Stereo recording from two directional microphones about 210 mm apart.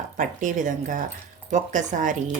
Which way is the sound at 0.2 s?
40° right (ahead or behind).